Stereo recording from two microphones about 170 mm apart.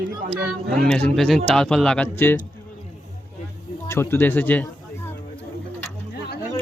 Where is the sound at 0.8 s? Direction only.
5° left (ahead or behind).